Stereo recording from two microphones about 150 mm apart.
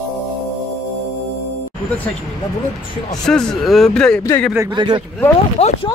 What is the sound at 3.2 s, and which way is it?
Speech, 5° left (ahead or behind).